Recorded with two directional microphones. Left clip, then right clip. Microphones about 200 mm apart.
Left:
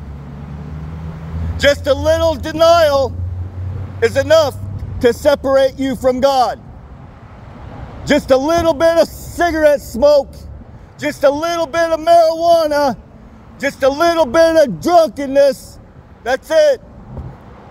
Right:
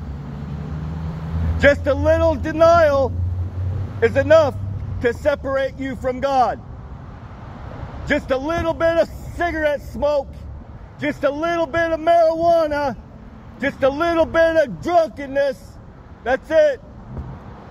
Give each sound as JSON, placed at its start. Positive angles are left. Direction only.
{"t": 1.6, "sound": "a man's voice", "side_deg": 75}
{"t": 8.0, "sound": "a man's voice", "side_deg": 75}